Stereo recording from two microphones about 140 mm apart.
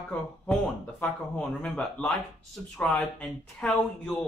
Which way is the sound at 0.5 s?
10° left (ahead or behind).